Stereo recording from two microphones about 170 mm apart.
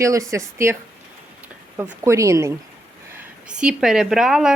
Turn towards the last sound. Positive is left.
turn(degrees=-5)  # may be behind; listen again after turning